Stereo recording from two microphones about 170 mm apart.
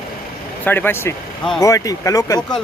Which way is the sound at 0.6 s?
10° left (ahead or behind).